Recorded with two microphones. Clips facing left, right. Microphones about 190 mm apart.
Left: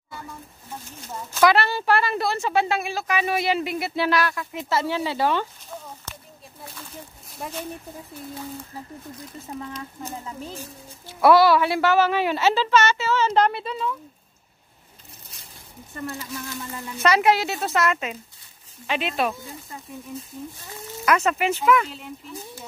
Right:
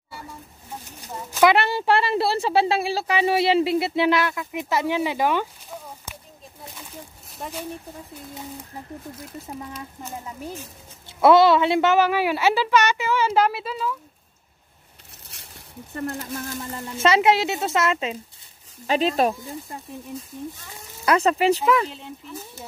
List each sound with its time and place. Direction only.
1.0 s speech: 15° right (ahead or behind)
7.3 s speech: centre (ahead or behind)
9.6 s speech: 5° right (ahead or behind)
11.1 s a woman's voice: 25° right (ahead or behind); by 13.9 s 5° right (ahead or behind)
15.9 s speech: 55° right (ahead or behind)
16.9 s speech: 25° right (ahead or behind)
18.9 s speech: 35° right (ahead or behind)
21.0 s speech: 30° right (ahead or behind)